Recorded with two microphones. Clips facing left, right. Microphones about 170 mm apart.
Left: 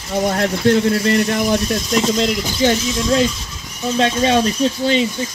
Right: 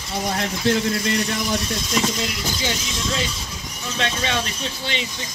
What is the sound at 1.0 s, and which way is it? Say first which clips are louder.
Speech: left 7 dB; 45° left (ahead or behind).